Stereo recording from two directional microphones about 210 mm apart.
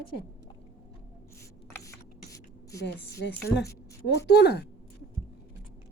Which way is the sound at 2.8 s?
55° left (ahead or behind).